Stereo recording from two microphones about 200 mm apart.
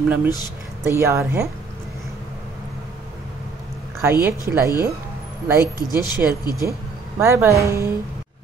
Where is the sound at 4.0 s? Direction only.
10° right (ahead or behind).